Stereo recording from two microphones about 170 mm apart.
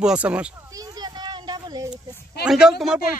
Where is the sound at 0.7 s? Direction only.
20° right (ahead or behind).